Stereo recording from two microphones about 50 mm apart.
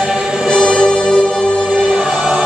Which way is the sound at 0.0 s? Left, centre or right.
Centre.